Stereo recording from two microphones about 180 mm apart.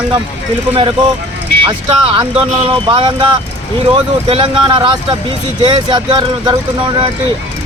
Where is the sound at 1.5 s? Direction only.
30° right (ahead or behind).